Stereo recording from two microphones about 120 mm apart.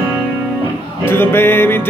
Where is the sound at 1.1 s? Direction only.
20° left (ahead or behind).